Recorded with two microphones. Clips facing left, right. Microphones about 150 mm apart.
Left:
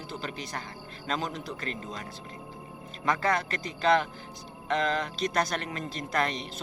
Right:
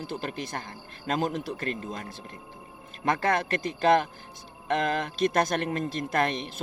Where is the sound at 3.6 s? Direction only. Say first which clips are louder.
Right 2 dB; 50° right (ahead or behind).